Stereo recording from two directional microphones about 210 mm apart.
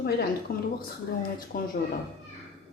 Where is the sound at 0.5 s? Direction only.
45° left (ahead or behind).